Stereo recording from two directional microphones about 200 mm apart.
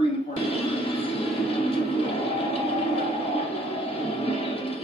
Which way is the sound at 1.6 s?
30° left (ahead or behind).